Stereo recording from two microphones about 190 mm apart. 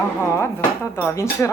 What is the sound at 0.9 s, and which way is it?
Speech, 15° left (ahead or behind).